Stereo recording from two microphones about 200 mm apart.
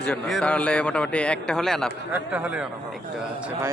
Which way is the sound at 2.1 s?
10° right (ahead or behind).